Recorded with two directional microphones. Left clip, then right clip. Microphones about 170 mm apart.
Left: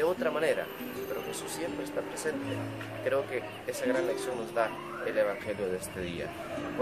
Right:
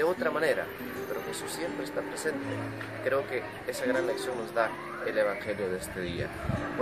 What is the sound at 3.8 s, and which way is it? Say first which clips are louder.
Speech: right 1 dB; centre (ahead or behind).